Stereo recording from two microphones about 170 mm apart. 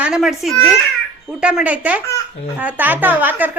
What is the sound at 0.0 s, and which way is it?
A child's voice, centre (ahead or behind).